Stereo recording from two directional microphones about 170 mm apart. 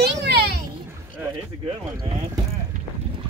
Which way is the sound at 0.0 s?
75° right (ahead or behind).